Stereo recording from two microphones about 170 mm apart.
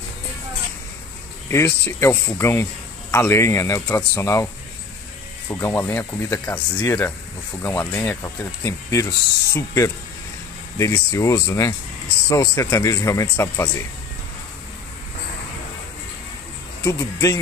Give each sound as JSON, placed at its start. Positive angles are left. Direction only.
{"t": 1.5, "sound": "speech", "side_deg": 15}
{"t": 5.5, "sound": "speech", "side_deg": 15}
{"t": 16.8, "sound": "speech", "side_deg": 15}